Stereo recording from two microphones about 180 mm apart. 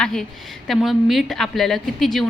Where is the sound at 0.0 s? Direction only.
5° left (ahead or behind).